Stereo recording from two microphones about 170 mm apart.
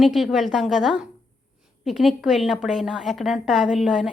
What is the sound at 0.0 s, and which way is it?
A woman's voice, centre (ahead or behind).